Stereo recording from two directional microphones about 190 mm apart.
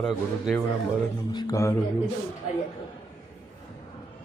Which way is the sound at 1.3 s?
20° left (ahead or behind).